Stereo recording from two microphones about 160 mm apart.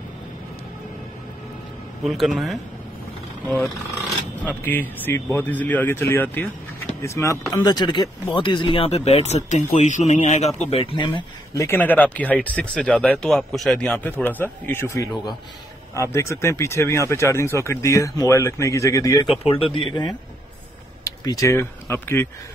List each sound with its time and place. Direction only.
2.0 s speech: centre (ahead or behind)
4.5 s a man's voice: 10° left (ahead or behind)
19.4 s speech: 35° left (ahead or behind)
21.0 s speech: 20° left (ahead or behind)